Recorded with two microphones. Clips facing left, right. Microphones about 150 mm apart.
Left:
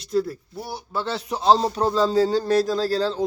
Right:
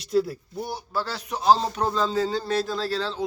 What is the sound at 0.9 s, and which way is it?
Speech, 25° left (ahead or behind).